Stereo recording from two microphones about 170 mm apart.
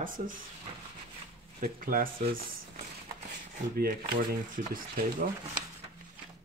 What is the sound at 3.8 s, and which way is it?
Speech, 55° right (ahead or behind).